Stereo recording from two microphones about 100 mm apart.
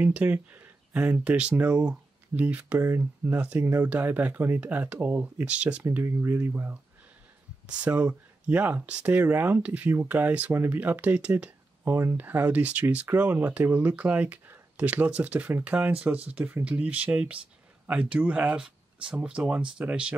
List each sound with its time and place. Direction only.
0.0 s speech: 15° right (ahead or behind)
5.9 s speech: 25° right (ahead or behind)